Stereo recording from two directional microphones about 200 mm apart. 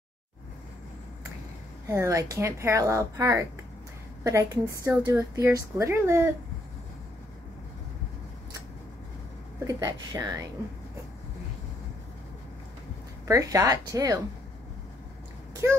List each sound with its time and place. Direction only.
1.9 s a woman's voice: 15° right (ahead or behind)
9.7 s a woman's voice: 15° right (ahead or behind)
13.3 s a woman's voice: 15° right (ahead or behind)